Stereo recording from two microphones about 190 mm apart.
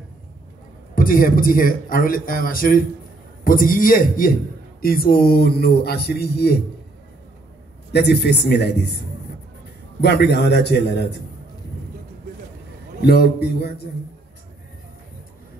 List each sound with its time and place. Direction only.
0.9 s a man's voice: 45° left (ahead or behind)
7.9 s speech: 60° left (ahead or behind)
9.9 s speech: 60° left (ahead or behind)
13.0 s speech: 55° left (ahead or behind)